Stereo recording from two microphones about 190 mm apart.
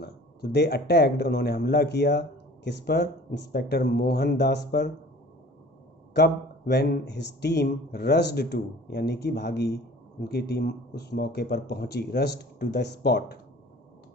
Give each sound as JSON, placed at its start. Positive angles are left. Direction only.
{"t": 0.0, "sound": "speech", "side_deg": 60}
{"t": 6.1, "sound": "speech", "side_deg": 60}